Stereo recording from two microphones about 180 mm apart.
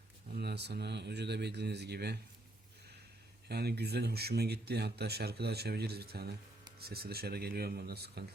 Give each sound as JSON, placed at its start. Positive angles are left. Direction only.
{"t": 0.3, "sound": "speech", "side_deg": -65}
{"t": 3.5, "sound": "speech", "side_deg": -60}